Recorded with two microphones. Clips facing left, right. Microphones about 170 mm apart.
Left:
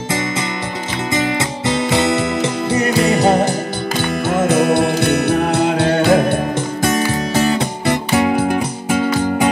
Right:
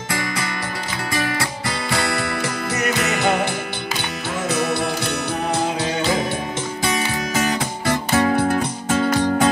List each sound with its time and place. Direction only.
1.1 s music: 20° left (ahead or behind); by 3.5 s 35° left (ahead or behind)
4.3 s music: 55° left (ahead or behind)
7.3 s music: 30° left (ahead or behind)
7.8 s music: 15° left (ahead or behind)